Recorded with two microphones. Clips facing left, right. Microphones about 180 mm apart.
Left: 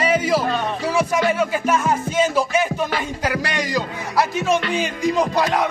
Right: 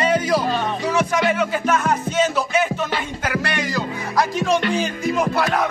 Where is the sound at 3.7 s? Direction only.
5° left (ahead or behind).